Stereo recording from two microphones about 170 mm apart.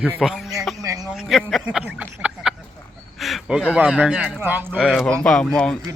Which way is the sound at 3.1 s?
Centre (ahead or behind).